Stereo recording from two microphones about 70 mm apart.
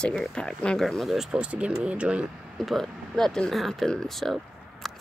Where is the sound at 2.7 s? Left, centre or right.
Centre.